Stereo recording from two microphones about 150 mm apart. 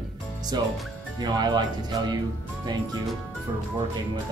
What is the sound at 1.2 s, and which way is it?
Speech, 30° right (ahead or behind).